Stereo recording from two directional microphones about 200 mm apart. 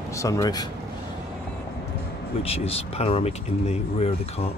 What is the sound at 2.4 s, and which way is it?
Speech, 30° left (ahead or behind).